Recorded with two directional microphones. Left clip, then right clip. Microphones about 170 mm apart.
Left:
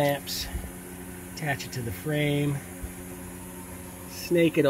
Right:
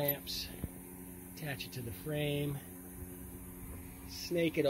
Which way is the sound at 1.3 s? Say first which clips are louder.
Left 12 dB; 25° left (ahead or behind).